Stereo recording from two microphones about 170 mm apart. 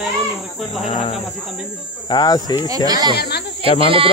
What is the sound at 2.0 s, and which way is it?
Speech, 25° left (ahead or behind).